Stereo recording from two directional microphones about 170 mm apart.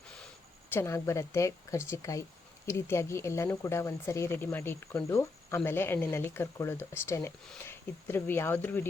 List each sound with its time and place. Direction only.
0.7 s speech: 15° left (ahead or behind)